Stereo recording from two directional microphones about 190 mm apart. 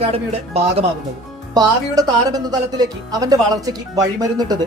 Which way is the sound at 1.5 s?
20° right (ahead or behind).